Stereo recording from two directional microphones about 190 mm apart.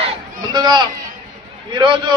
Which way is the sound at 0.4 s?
20° right (ahead or behind).